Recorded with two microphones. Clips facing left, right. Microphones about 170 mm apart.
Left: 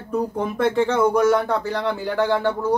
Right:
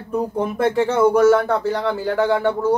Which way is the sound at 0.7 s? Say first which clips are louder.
Right 3 dB; 5° right (ahead or behind).